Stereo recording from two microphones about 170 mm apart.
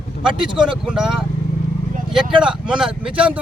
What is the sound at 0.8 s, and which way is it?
Speech, 5° right (ahead or behind).